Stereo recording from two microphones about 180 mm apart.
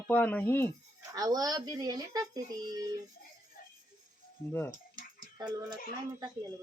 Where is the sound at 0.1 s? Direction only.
10° left (ahead or behind).